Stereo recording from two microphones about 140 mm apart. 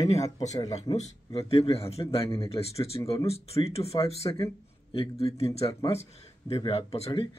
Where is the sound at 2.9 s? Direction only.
30° left (ahead or behind).